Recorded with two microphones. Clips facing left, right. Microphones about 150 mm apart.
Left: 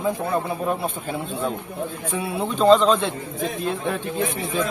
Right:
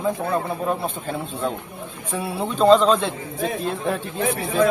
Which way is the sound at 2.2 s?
Centre (ahead or behind).